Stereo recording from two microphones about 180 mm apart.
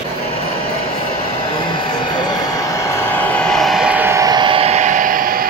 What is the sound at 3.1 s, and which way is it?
Vehicle, 10° left (ahead or behind).